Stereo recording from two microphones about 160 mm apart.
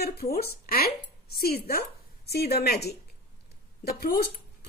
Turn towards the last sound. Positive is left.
turn(degrees=75)  # may be behind; listen again after turning